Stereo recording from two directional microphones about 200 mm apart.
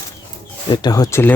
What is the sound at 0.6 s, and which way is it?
Speech, 20° left (ahead or behind).